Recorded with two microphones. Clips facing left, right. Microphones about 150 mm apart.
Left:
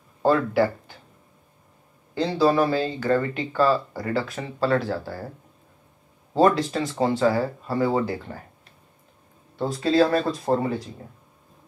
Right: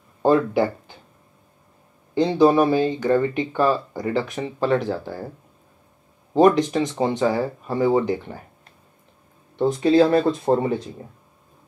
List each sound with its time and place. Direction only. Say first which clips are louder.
0.2 s speech: right 2 dB; 20° right (ahead or behind)
2.1 s speech: right 4 dB; 20° right (ahead or behind)
6.3 s speech: right 3 dB; 20° right (ahead or behind)
9.7 s speech: right 4 dB; 20° right (ahead or behind)